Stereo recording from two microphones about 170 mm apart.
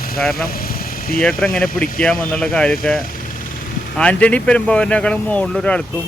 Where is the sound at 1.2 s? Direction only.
5° left (ahead or behind).